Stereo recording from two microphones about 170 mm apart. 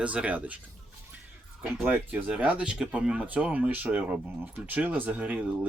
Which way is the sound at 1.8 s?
10° right (ahead or behind).